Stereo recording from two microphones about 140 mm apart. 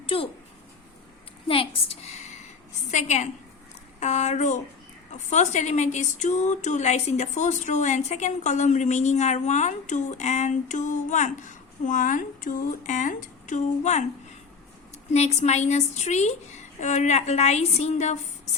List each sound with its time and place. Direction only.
0.0 s a sound: 40° left (ahead or behind)
1.5 s a woman's voice: 45° left (ahead or behind)
15.1 s a woman's voice: 50° left (ahead or behind)